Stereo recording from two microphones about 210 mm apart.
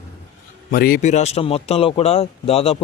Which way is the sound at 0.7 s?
45° left (ahead or behind).